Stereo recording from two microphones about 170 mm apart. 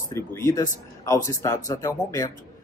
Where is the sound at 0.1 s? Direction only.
15° left (ahead or behind).